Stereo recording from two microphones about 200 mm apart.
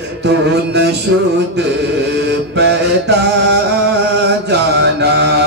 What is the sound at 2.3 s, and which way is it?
Mantra, 60° right (ahead or behind).